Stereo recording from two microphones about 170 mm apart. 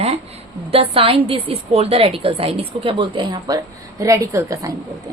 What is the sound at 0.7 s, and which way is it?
A woman's voice, 35° right (ahead or behind).